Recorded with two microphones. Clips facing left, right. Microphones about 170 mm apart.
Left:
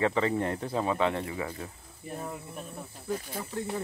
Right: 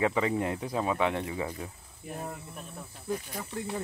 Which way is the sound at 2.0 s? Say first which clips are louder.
Left 1 dB; 5° right (ahead or behind).